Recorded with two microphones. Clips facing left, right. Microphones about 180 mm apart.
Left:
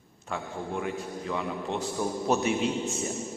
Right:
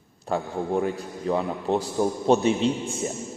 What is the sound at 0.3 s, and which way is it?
A man's voice, 35° right (ahead or behind).